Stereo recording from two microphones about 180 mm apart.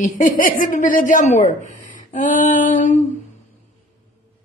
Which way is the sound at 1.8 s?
45° left (ahead or behind).